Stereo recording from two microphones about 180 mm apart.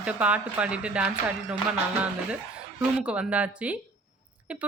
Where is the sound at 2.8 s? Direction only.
5° right (ahead or behind).